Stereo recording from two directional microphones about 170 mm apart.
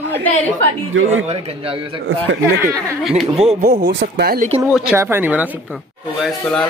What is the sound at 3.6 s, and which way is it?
Speech, 65° right (ahead or behind).